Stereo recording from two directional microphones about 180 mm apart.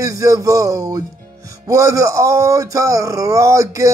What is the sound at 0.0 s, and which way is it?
Speech, 20° right (ahead or behind).